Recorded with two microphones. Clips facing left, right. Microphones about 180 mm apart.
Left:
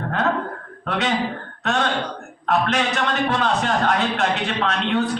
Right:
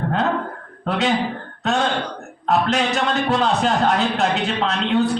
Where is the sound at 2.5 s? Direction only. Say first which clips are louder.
Right 2 dB; 25° right (ahead or behind).